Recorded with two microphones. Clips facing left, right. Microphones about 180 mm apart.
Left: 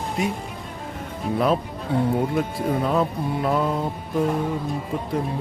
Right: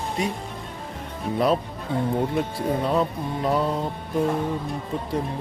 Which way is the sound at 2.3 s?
Centre (ahead or behind).